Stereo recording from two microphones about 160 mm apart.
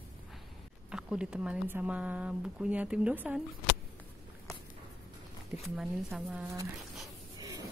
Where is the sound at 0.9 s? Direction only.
5° right (ahead or behind).